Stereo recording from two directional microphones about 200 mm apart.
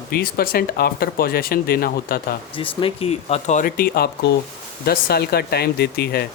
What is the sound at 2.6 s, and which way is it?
Speech, 30° left (ahead or behind).